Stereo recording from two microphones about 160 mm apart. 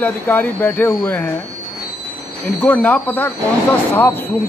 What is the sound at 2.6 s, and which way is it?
Speech, 10° left (ahead or behind).